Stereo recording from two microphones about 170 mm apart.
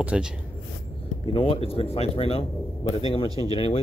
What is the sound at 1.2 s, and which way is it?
A man's voice, 30° left (ahead or behind).